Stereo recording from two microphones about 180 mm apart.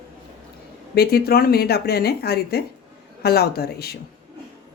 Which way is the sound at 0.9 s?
60° left (ahead or behind).